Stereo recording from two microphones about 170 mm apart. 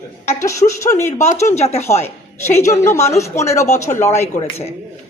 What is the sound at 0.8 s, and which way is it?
Speech, 15° left (ahead or behind).